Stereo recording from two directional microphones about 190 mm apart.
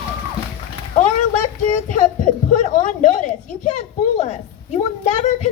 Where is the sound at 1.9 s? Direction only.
40° left (ahead or behind).